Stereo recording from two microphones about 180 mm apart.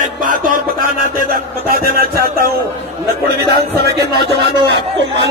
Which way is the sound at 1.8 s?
55° right (ahead or behind).